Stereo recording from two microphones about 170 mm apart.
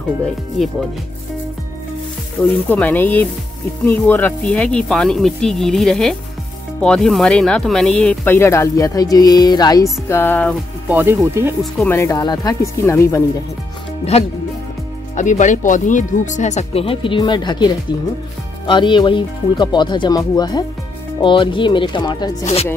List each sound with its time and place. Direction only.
2.4 s speech: 10° left (ahead or behind)
8.3 s speech: 15° left (ahead or behind)
10.9 s speech: 10° right (ahead or behind)
11.8 s speech: 15° left (ahead or behind)
15.1 s speech: 45° left (ahead or behind); by 22.4 s 25° left (ahead or behind)
22.4 s speech: 40° left (ahead or behind)